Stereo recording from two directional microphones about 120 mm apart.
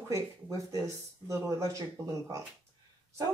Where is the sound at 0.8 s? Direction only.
25° right (ahead or behind).